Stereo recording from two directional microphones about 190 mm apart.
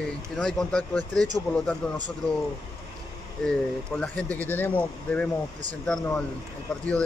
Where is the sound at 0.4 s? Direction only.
5° left (ahead or behind).